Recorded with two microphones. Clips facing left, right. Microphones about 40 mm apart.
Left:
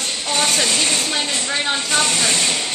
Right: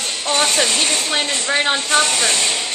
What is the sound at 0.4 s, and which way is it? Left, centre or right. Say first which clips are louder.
Speech: right 1 dB; centre.